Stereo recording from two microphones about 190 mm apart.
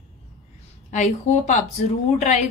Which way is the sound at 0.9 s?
40° left (ahead or behind).